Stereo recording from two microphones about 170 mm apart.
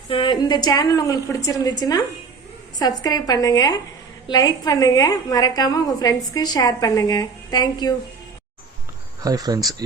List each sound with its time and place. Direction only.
0.1 s a woman's voice: 30° left (ahead or behind)
9.2 s speech: 20° right (ahead or behind)